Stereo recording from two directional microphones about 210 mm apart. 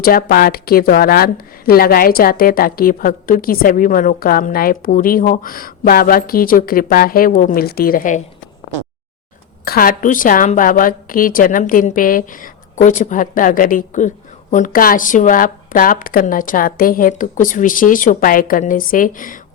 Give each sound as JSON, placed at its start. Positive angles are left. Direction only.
{"t": 0.0, "sound": "speech", "side_deg": 45}
{"t": 9.6, "sound": "a woman's voice", "side_deg": 45}